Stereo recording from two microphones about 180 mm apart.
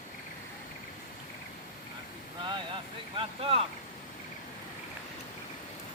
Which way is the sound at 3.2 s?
30° right (ahead or behind).